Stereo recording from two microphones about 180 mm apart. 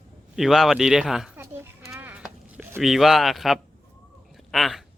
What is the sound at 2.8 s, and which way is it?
A man's voice, centre (ahead or behind).